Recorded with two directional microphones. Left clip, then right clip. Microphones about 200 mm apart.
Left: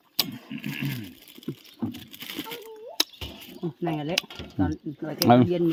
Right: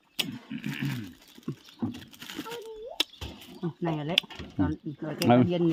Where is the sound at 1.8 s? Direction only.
40° left (ahead or behind).